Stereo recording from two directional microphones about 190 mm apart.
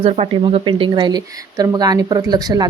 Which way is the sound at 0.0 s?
30° right (ahead or behind).